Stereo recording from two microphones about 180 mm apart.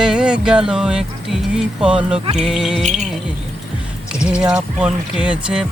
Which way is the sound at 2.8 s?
40° right (ahead or behind).